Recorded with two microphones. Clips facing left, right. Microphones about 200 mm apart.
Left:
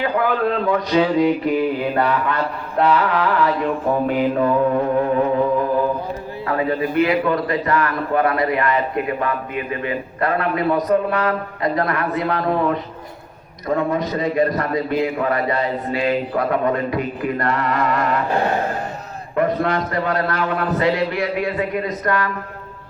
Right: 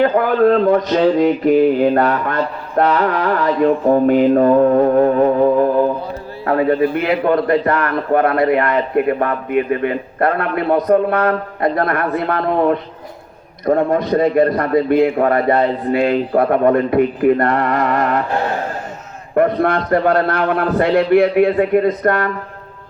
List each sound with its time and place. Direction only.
0.0 s a man's voice: 50° right (ahead or behind)
6.4 s a man's voice: 50° right (ahead or behind)
19.3 s a man's voice: 50° right (ahead or behind)